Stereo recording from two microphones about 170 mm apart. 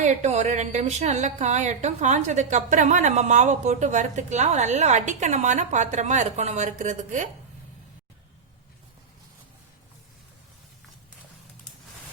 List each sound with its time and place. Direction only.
0.0 s speech: 45° right (ahead or behind)